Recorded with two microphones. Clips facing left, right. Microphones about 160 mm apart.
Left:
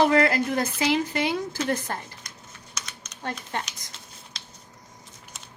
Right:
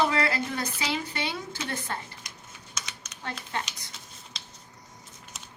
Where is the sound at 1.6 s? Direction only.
45° left (ahead or behind).